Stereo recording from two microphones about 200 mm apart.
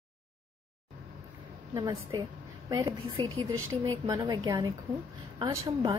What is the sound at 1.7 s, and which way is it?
A woman's voice, 20° right (ahead or behind).